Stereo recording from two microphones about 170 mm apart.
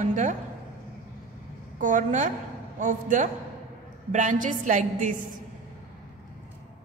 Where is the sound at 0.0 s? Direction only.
50° right (ahead or behind).